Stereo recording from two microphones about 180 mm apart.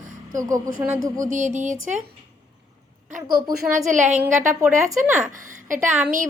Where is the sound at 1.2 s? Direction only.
45° right (ahead or behind).